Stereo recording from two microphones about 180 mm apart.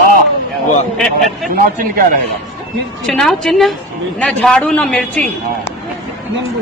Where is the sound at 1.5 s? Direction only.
50° right (ahead or behind).